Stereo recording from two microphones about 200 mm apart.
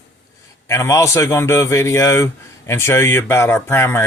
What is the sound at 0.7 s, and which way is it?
A man's voice, 15° left (ahead or behind).